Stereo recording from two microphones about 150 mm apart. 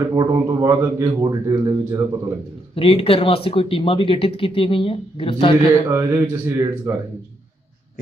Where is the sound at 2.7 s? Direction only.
40° left (ahead or behind).